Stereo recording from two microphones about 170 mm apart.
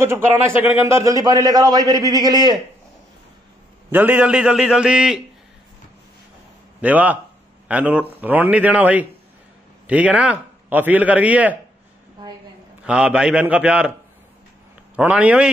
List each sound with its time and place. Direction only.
0.0 s a man's voice: 15° right (ahead or behind)
3.9 s a man's voice: 10° right (ahead or behind)
6.8 s a man's voice: 10° right (ahead or behind)
12.8 s a man's voice: 5° right (ahead or behind)
15.0 s a man's voice: 10° right (ahead or behind)